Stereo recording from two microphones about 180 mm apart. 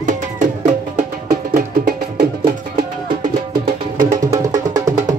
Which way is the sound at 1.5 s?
60° right (ahead or behind).